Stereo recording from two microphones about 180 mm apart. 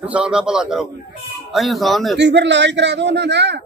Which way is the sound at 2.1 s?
75° right (ahead or behind).